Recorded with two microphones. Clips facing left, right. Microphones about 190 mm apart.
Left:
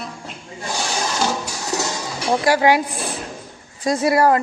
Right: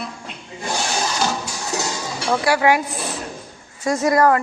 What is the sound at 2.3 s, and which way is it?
Speech, 35° left (ahead or behind).